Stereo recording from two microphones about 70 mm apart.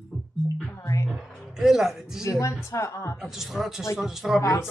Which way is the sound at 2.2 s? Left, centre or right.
Left.